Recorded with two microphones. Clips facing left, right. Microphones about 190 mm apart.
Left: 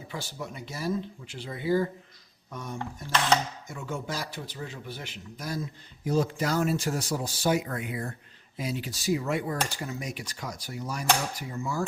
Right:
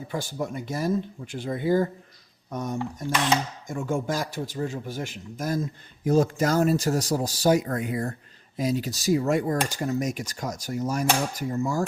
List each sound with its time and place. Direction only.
0.1 s a man's voice: 50° right (ahead or behind)